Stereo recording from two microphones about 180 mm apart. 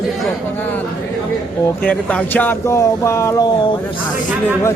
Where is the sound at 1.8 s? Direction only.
10° left (ahead or behind).